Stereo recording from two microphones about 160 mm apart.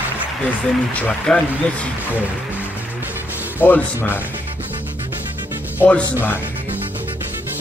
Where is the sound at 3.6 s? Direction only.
10° left (ahead or behind).